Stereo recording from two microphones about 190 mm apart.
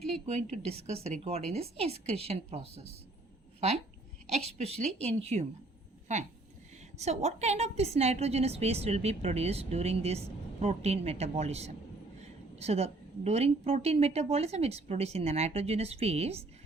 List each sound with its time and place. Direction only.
0.3 s a woman's voice: 35° right (ahead or behind)
4.3 s a woman's voice: 35° right (ahead or behind)